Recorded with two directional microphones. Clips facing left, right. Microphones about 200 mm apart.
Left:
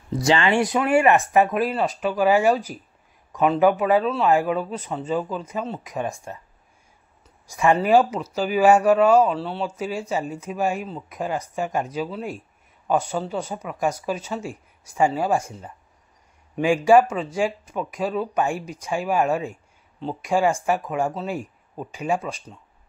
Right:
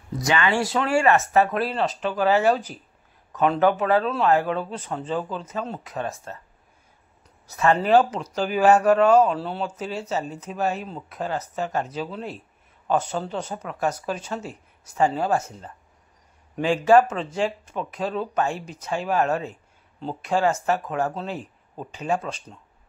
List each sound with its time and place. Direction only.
0.2 s speech: 25° left (ahead or behind)
7.4 s speech: 15° left (ahead or behind)